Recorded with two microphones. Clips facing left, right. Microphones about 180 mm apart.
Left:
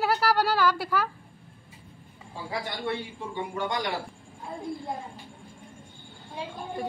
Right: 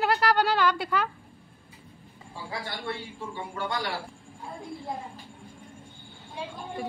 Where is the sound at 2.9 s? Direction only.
20° left (ahead or behind).